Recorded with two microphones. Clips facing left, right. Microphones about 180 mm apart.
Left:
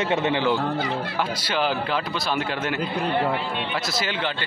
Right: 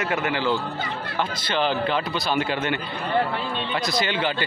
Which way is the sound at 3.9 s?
Centre (ahead or behind).